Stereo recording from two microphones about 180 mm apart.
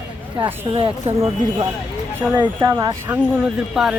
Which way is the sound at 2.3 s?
25° right (ahead or behind).